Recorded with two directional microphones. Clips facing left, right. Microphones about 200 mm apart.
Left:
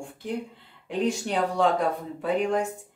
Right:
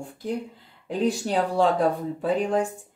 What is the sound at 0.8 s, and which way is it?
Speech, 40° right (ahead or behind).